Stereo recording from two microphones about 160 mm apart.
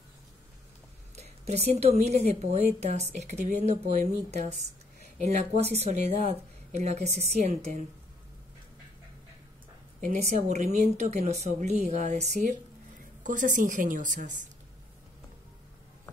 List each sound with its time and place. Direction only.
1.1 s speech: 45° right (ahead or behind)
10.0 s a woman's voice: 50° right (ahead or behind)